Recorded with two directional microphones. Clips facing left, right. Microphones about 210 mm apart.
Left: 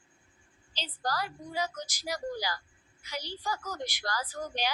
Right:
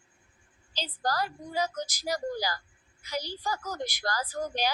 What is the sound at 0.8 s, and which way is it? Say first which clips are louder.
A woman's voice: right 3 dB; 40° right (ahead or behind).